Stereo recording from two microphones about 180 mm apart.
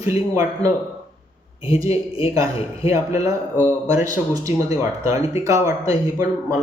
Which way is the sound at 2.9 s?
15° right (ahead or behind).